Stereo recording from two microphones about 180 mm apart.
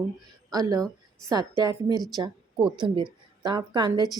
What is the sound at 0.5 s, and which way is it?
A woman's voice, 20° right (ahead or behind).